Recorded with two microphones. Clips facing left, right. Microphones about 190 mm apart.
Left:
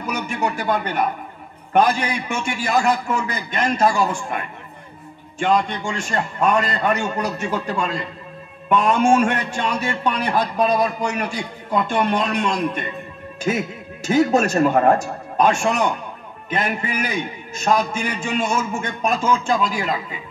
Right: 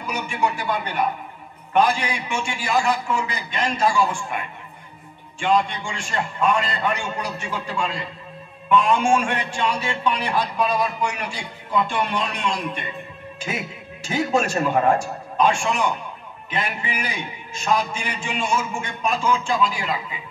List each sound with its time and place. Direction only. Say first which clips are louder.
0.0 s a man's voice: left 1 dB; 45° left (ahead or behind)
5.4 s a man's voice: left 1 dB; 45° left (ahead or behind)